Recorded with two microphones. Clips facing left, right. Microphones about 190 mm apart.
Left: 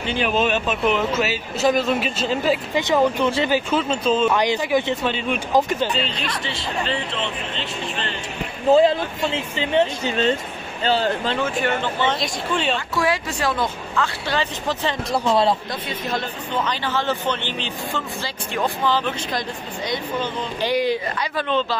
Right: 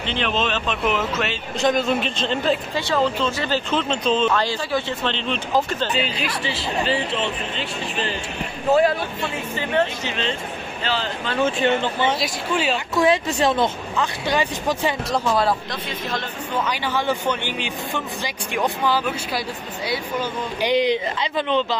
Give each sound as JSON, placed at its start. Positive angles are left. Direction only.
{"t": 0.0, "sound": "speech", "side_deg": 10}
{"t": 5.9, "sound": "speech", "side_deg": -5}
{"t": 8.7, "sound": "speech", "side_deg": 20}
{"t": 11.4, "sound": "speech", "side_deg": -20}
{"t": 12.0, "sound": "speech", "side_deg": -5}
{"t": 12.9, "sound": "speech", "side_deg": -20}
{"t": 15.2, "sound": "speech", "side_deg": 25}
{"t": 16.6, "sound": "speech", "side_deg": -10}
{"t": 20.7, "sound": "speech", "side_deg": -20}